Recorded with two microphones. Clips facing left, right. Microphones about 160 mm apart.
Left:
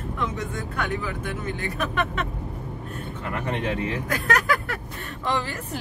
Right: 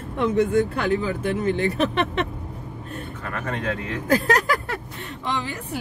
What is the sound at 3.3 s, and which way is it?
Speech, 20° left (ahead or behind).